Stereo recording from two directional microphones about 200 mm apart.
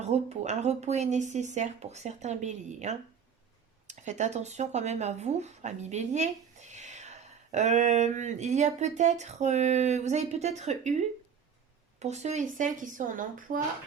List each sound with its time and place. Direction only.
0.0 s speech: 35° right (ahead or behind)